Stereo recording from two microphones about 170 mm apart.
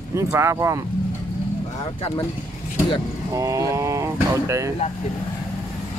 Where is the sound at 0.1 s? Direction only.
15° right (ahead or behind).